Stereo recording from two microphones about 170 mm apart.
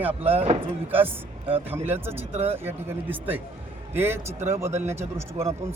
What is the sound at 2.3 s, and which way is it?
Speech, 35° right (ahead or behind).